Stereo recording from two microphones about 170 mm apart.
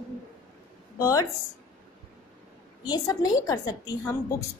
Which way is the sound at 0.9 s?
20° left (ahead or behind).